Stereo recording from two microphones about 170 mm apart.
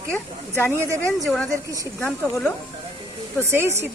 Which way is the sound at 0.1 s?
15° left (ahead or behind).